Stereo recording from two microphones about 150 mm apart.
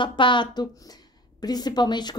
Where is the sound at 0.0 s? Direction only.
35° left (ahead or behind).